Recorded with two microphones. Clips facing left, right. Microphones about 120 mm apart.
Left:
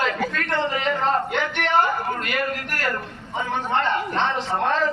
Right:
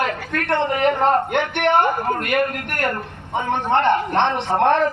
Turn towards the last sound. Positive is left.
turn(degrees=-60)  # may be behind; listen again after turning